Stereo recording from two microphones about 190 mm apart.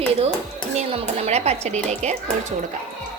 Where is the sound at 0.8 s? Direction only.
35° right (ahead or behind).